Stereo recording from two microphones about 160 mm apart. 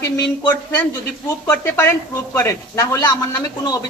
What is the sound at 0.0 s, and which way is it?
A man's voice, 20° left (ahead or behind).